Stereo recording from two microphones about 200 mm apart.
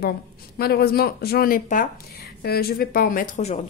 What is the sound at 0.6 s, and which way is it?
A woman's voice, 50° left (ahead or behind).